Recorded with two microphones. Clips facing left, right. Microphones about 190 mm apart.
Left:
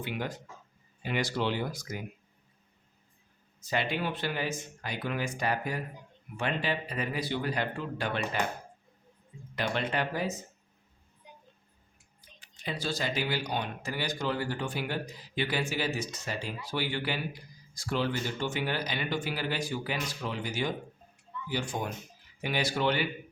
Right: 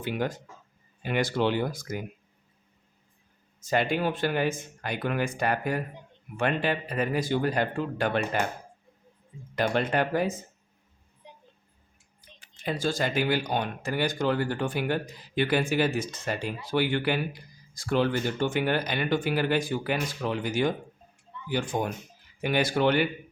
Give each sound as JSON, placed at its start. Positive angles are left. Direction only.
{"t": 0.0, "sound": "speech", "side_deg": -45}
{"t": 3.6, "sound": "speech", "side_deg": -45}
{"t": 9.6, "sound": "speech", "side_deg": -45}
{"t": 12.4, "sound": "speech", "side_deg": -50}